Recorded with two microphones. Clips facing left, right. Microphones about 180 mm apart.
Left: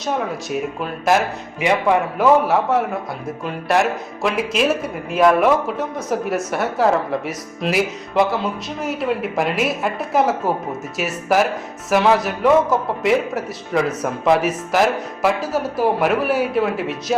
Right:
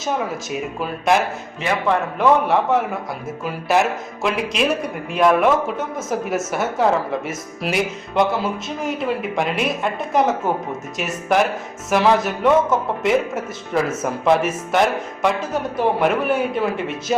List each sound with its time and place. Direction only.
0.0 s a man's voice: centre (ahead or behind)